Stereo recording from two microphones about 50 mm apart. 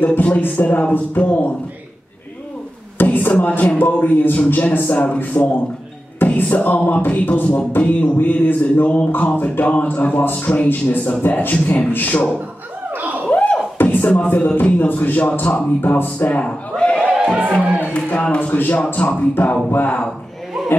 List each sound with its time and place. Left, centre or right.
0.0 s a man's voice: left
3.0 s a man's voice: left
6.1 s music: left
7.1 s a man's voice: left
12.9 s a sound: right
13.3 s beatboxing: left
14.6 s a man's voice: left
16.4 s a sound: centre
17.1 s music: centre
17.8 s speech: left
18.5 s a man's voice: left